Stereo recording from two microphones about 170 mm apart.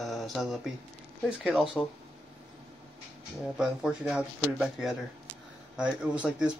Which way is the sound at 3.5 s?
5° right (ahead or behind).